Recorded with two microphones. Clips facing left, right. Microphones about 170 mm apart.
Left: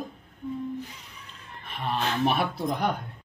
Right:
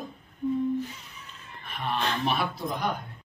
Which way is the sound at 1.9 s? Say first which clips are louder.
Left 2 dB; 5° left (ahead or behind).